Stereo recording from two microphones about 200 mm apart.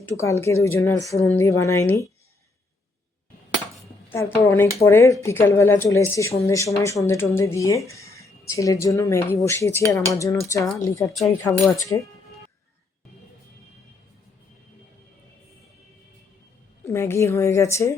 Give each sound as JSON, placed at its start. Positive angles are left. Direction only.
{"t": 0.0, "sound": "speech", "side_deg": 15}
{"t": 4.1, "sound": "speech", "side_deg": 15}
{"t": 16.8, "sound": "speech", "side_deg": 15}